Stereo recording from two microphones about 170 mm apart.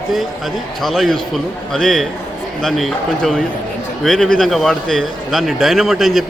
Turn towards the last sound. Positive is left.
turn(degrees=0)  # may be behind; listen again after turning